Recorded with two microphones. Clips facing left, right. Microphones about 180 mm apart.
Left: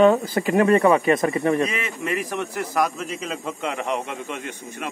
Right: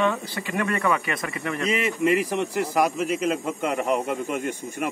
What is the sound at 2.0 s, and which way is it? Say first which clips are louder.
A man's voice: right 4 dB; 10° right (ahead or behind).